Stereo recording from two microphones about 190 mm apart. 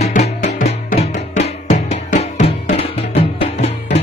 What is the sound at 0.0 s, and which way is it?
Music, 35° left (ahead or behind).